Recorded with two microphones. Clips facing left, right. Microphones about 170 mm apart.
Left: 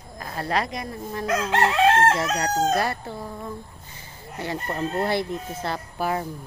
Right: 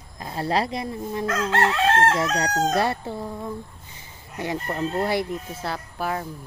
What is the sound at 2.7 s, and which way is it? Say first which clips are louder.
Speech: right 1 dB; 25° right (ahead or behind).